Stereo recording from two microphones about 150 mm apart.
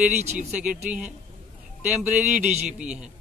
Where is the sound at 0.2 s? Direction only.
50° right (ahead or behind).